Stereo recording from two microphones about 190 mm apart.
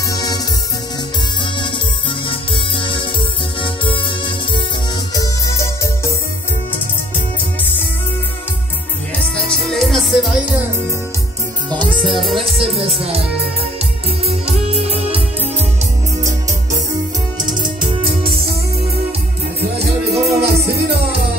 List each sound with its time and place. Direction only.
0.1 s music: 20° left (ahead or behind)
2.2 s music: 25° left (ahead or behind)
5.1 s music: 15° left (ahead or behind)
9.5 s music: centre (ahead or behind)
12.2 s music: centre (ahead or behind)
12.5 s music: 30° right (ahead or behind)
14.7 s music: 30° right (ahead or behind)
18.0 s music: 30° right (ahead or behind)
19.6 s music: 60° right (ahead or behind)